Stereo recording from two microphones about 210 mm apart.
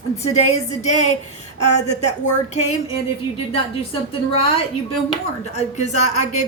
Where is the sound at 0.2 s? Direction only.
30° left (ahead or behind).